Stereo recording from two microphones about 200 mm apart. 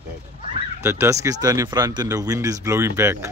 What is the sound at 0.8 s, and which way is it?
Speech, 15° right (ahead or behind).